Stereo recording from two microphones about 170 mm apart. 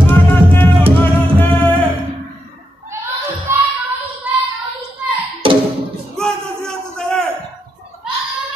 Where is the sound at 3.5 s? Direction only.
15° right (ahead or behind).